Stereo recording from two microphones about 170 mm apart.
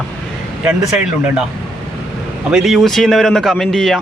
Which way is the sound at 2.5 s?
Centre (ahead or behind).